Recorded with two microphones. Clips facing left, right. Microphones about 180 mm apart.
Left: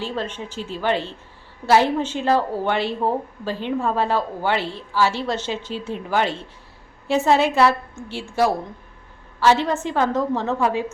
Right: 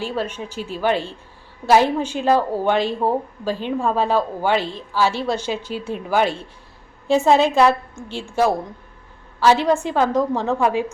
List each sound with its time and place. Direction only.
0.0 s a woman's voice: 10° right (ahead or behind)
9.4 s a woman's voice: 15° right (ahead or behind)